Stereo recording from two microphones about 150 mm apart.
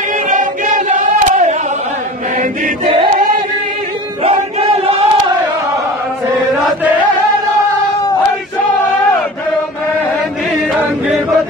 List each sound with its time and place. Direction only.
0.3 s battle cry: 60° right (ahead or behind)
2.8 s choir: 35° right (ahead or behind)
4.2 s battle cry: 40° right (ahead or behind)